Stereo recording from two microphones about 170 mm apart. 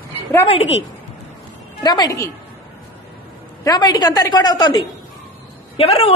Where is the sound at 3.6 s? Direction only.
25° left (ahead or behind).